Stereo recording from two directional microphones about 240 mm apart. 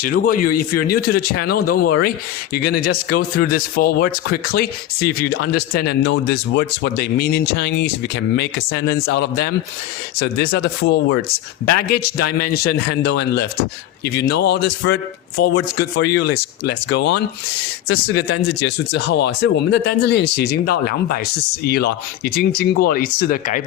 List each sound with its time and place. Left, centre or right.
0.0 s speech: left
12.1 s speech: left
13.1 s speech: left
18.1 s speech: left